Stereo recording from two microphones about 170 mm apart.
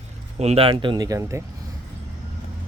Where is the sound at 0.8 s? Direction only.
25° right (ahead or behind).